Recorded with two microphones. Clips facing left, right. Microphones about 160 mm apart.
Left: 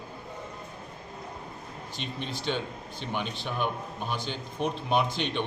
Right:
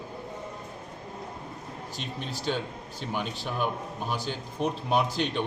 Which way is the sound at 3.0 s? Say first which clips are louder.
Right 1 dB; 5° right (ahead or behind).